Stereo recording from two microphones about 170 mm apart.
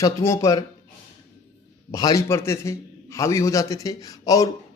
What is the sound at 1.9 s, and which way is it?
A man's voice, 20° left (ahead or behind).